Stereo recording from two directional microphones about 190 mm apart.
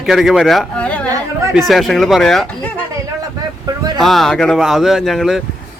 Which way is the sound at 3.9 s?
Centre (ahead or behind).